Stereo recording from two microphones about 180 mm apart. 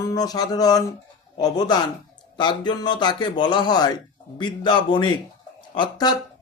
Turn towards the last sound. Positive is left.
turn(degrees=25)  # may be behind; listen again after turning